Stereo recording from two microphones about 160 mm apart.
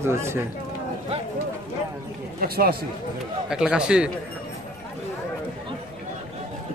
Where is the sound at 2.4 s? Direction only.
70° right (ahead or behind).